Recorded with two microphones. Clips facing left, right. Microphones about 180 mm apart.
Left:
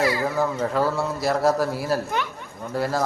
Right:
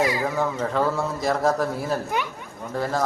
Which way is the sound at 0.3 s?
5° left (ahead or behind).